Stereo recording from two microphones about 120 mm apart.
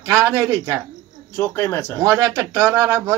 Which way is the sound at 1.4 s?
20° left (ahead or behind).